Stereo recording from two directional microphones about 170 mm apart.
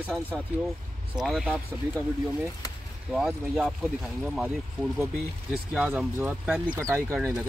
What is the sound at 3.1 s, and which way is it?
Speech, 5° right (ahead or behind).